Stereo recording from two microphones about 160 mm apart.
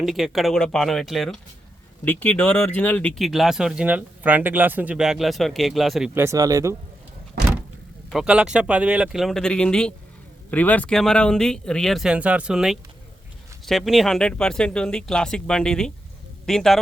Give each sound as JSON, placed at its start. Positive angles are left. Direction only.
{"t": 0.0, "sound": "speech", "side_deg": 0}
{"t": 2.0, "sound": "speech", "side_deg": 10}
{"t": 6.1, "sound": "speech", "side_deg": -20}
{"t": 8.1, "sound": "speech", "side_deg": -5}